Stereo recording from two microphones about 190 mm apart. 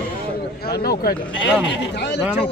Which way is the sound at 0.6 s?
55° left (ahead or behind).